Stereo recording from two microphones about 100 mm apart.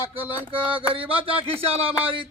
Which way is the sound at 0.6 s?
60° right (ahead or behind).